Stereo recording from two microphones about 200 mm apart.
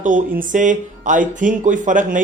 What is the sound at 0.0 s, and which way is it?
Speech, 40° right (ahead or behind).